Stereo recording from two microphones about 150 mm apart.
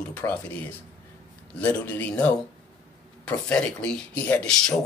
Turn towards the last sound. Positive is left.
turn(degrees=5)  # may be behind; listen again after turning